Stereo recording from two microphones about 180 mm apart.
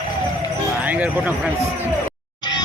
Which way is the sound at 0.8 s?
10° right (ahead or behind).